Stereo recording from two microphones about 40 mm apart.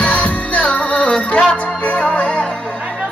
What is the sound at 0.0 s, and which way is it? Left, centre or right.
Music, left.